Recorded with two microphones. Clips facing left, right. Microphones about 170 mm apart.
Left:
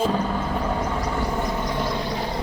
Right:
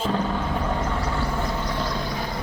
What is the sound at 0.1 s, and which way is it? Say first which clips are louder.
Vehicle: left 1 dB; 5° left (ahead or behind).